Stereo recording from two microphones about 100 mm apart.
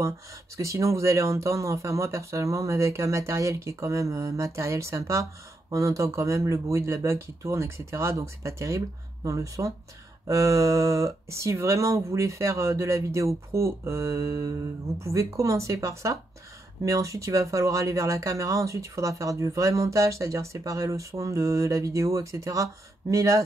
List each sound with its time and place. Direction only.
0.6 s speech: 30° right (ahead or behind)